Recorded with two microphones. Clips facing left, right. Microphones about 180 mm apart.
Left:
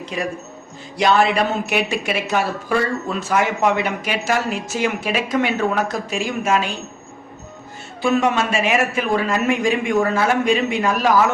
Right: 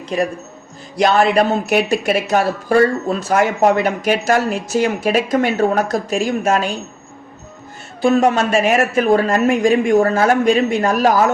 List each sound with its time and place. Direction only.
0.0 s a woman's voice: 45° right (ahead or behind)
8.0 s a woman's voice: 40° right (ahead or behind)